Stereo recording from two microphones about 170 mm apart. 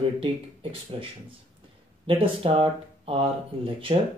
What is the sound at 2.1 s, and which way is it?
Speech, 30° right (ahead or behind).